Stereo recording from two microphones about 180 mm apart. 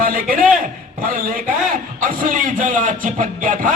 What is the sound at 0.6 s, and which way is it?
A man's voice, 50° right (ahead or behind).